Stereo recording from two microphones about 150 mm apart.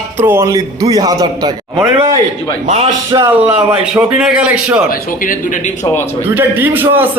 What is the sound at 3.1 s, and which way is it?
Speech, 15° right (ahead or behind).